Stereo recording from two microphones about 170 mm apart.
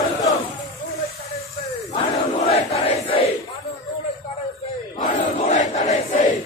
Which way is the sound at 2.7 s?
30° left (ahead or behind).